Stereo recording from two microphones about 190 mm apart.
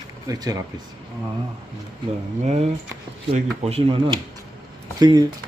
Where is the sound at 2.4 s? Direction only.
35° right (ahead or behind).